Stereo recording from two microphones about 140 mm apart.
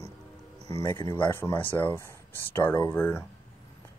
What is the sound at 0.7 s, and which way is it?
Speech, 20° left (ahead or behind).